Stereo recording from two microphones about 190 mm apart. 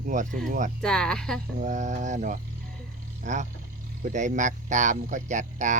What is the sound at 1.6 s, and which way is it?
Speech, 40° right (ahead or behind).